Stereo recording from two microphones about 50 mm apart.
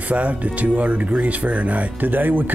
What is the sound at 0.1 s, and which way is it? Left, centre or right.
Speech, right.